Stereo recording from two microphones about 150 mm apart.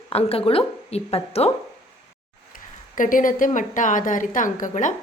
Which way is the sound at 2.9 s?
65° left (ahead or behind).